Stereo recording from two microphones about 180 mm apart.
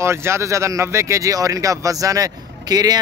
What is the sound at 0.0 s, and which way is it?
Speech, 15° right (ahead or behind).